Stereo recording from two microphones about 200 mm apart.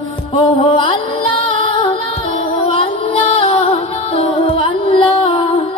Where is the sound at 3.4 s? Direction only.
25° left (ahead or behind).